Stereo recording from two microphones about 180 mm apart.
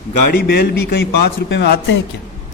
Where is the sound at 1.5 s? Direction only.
75° left (ahead or behind).